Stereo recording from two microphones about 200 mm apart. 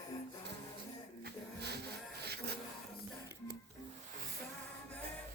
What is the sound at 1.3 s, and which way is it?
Printer, 55° right (ahead or behind).